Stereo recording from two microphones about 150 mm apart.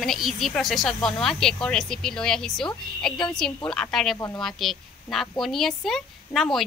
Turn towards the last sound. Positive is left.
turn(degrees=0)  # may be behind; listen again after turning